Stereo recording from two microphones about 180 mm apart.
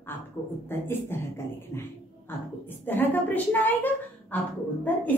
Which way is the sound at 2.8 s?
10° left (ahead or behind).